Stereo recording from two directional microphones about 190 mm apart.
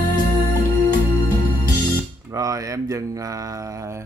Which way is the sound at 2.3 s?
20° right (ahead or behind).